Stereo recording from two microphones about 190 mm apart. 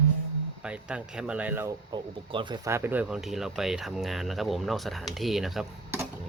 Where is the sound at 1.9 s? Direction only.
25° right (ahead or behind).